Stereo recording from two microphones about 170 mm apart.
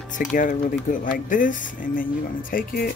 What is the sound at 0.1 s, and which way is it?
Speech, 50° left (ahead or behind).